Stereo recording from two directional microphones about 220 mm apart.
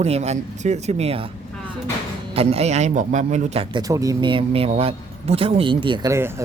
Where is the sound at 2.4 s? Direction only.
30° right (ahead or behind).